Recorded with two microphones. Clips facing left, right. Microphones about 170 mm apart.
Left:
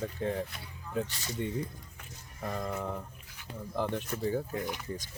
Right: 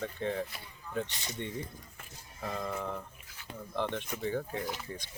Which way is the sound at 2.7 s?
5° left (ahead or behind).